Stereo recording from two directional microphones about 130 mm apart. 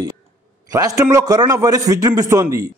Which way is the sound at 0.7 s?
25° right (ahead or behind).